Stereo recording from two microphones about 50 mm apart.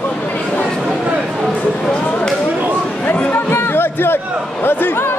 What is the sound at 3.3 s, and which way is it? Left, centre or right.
Music, left.